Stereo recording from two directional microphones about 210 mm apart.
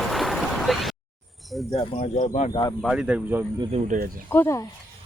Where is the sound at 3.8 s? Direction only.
40° right (ahead or behind).